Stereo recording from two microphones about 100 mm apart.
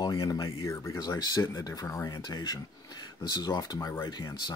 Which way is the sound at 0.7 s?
30° left (ahead or behind).